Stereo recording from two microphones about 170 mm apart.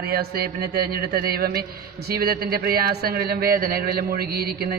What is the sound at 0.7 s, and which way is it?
A man's voice, 60° right (ahead or behind).